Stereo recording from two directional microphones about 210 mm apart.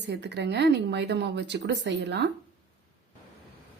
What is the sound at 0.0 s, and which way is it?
Speech, 55° right (ahead or behind).